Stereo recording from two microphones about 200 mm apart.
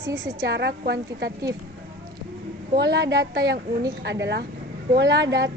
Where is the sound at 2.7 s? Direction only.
55° right (ahead or behind).